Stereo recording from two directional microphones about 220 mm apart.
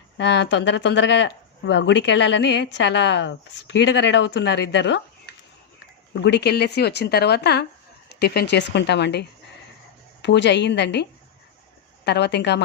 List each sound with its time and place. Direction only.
0.2 s speech: 55° left (ahead or behind)
6.2 s speech: 50° left (ahead or behind)
12.0 s speech: 50° left (ahead or behind)